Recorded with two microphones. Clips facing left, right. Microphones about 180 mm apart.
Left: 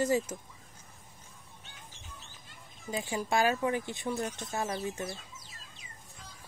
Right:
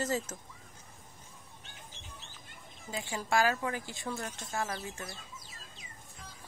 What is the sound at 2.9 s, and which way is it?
Speech, 20° left (ahead or behind).